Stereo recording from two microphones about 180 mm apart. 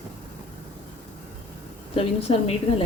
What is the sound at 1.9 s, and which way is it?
Speech, 35° left (ahead or behind).